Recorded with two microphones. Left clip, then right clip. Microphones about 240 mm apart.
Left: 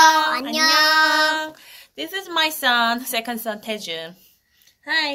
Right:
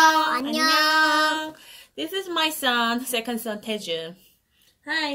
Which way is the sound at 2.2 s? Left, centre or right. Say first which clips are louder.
Left 5 dB; centre.